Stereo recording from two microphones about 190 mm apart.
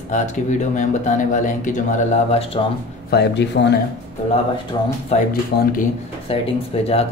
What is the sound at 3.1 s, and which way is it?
Speech, 65° left (ahead or behind).